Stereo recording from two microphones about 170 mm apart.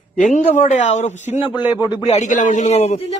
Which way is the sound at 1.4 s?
30° left (ahead or behind).